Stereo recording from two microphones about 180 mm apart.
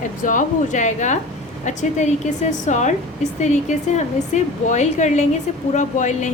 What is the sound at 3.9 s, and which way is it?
A woman's voice, 40° left (ahead or behind).